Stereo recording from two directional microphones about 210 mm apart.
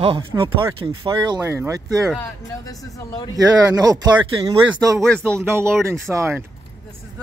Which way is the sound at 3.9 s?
15° right (ahead or behind).